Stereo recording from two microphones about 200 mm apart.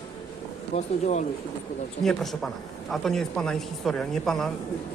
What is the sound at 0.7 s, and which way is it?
Speech, 35° left (ahead or behind).